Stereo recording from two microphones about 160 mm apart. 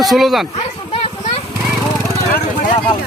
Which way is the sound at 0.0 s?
Centre (ahead or behind).